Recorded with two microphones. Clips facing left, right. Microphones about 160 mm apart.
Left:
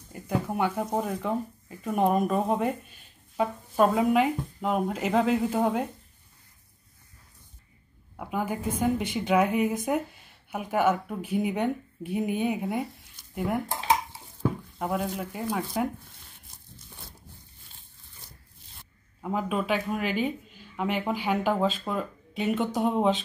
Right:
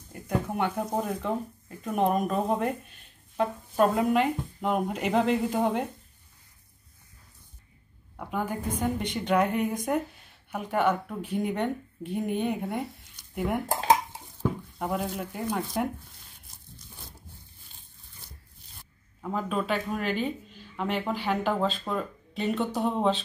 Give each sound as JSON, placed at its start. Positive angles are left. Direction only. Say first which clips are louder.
{"t": 0.1, "sound": "speech", "louder": "left 1 dB", "side_deg": 5}
{"t": 8.2, "sound": "speech", "louder": "left 1 dB", "side_deg": 5}
{"t": 13.7, "sound": "speech", "louder": "right 6 dB", "side_deg": -45}
{"t": 14.4, "sound": "speech", "louder": "left 1 dB", "side_deg": 0}
{"t": 19.2, "sound": "speech", "louder": "left 1 dB", "side_deg": 10}